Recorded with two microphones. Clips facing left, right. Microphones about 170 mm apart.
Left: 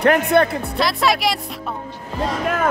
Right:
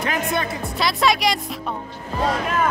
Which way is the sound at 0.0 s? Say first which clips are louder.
Left 9 dB; 60° left (ahead or behind).